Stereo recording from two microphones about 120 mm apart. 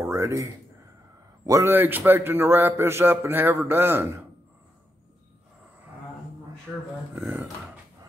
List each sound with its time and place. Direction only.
0.0 s a sound: 25° right (ahead or behind)
1.4 s a man's voice: 30° right (ahead or behind)
1.7 s a man's voice: 15° right (ahead or behind)